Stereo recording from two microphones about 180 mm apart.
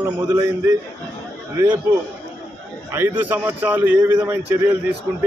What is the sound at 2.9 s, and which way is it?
A man's voice, 10° right (ahead or behind).